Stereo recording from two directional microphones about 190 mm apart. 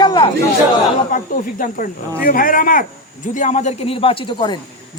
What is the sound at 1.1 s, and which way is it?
Speech, 45° left (ahead or behind).